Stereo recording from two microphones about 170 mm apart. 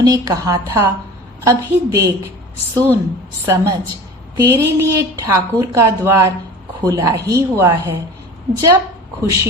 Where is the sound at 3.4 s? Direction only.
15° right (ahead or behind).